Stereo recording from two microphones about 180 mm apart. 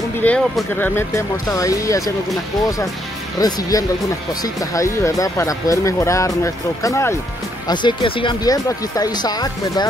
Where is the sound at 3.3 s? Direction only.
20° left (ahead or behind).